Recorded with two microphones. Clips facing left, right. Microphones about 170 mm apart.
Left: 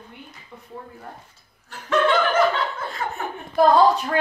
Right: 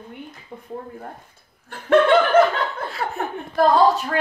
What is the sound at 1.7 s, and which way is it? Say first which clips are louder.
Laughter: right 5 dB; 60° right (ahead or behind).